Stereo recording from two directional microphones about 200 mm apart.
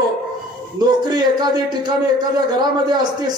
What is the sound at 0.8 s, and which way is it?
A man's voice, 20° right (ahead or behind).